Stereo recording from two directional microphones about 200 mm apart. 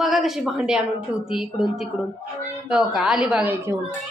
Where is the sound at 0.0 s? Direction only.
Centre (ahead or behind).